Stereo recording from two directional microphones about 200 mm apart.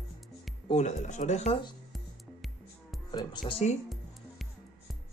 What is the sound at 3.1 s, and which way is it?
Speech, 20° left (ahead or behind).